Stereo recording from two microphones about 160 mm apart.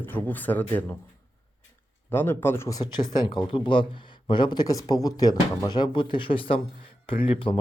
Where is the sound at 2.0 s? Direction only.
15° left (ahead or behind).